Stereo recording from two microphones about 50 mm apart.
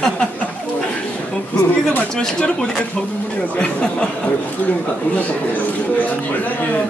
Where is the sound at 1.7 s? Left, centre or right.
Left.